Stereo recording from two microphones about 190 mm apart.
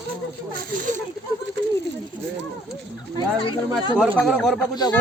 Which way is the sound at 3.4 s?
25° left (ahead or behind).